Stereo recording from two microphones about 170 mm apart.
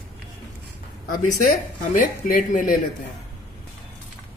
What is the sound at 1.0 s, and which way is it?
Speech, 55° left (ahead or behind).